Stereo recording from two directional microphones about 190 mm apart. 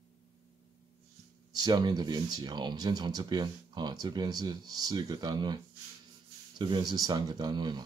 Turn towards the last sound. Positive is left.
turn(degrees=-25)  # may be behind; listen again after turning